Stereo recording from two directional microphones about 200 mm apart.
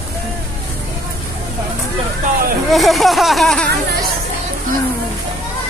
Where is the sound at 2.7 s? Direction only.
Centre (ahead or behind).